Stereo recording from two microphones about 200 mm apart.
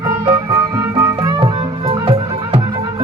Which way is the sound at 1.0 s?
20° right (ahead or behind).